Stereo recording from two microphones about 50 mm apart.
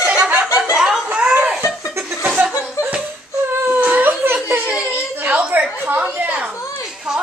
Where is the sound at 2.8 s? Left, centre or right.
Left.